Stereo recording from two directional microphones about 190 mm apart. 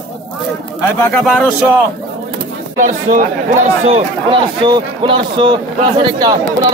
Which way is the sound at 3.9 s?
25° right (ahead or behind).